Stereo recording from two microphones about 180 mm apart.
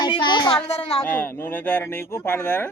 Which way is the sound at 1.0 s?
10° left (ahead or behind).